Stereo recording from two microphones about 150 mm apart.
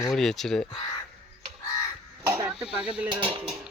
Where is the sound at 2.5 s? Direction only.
5° right (ahead or behind).